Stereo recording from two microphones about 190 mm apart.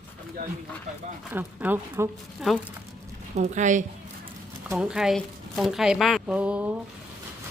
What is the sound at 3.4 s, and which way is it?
Speech, 40° right (ahead or behind).